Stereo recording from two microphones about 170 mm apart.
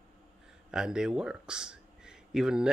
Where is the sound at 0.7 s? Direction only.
5° right (ahead or behind).